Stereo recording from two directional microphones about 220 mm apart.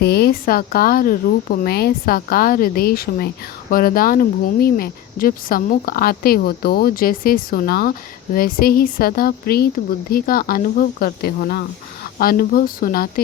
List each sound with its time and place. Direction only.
0.0 s speech: 45° left (ahead or behind)